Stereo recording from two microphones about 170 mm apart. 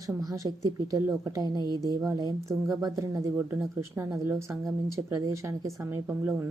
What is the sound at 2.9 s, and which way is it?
A woman's voice, 20° right (ahead or behind).